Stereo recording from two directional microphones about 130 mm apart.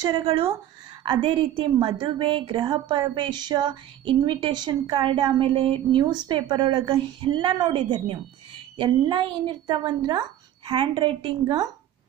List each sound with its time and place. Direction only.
0.1 s a woman's voice: 40° right (ahead or behind)